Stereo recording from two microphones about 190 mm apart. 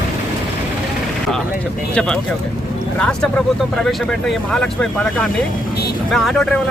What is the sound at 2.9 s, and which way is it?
Speech, 5° left (ahead or behind).